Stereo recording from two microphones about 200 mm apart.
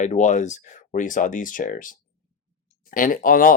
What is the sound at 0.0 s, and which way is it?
Speech, 35° left (ahead or behind).